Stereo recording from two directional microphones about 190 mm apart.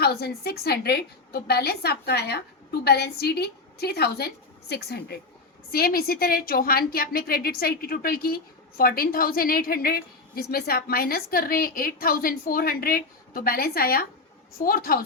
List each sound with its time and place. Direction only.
0.0 s a woman's voice: 55° left (ahead or behind)